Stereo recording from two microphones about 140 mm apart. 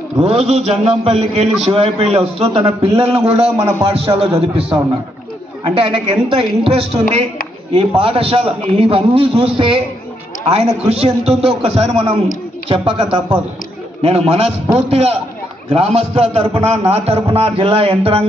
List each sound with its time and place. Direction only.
0.2 s a man's voice: 45° right (ahead or behind)